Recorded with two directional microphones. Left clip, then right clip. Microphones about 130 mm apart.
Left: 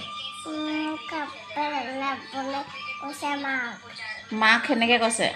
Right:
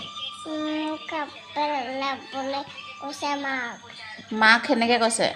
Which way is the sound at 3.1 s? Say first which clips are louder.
Right 3 dB; 40° right (ahead or behind).